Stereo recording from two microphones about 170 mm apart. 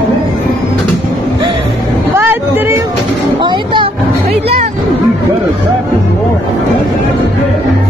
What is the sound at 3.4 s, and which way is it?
Vehicle, 30° right (ahead or behind).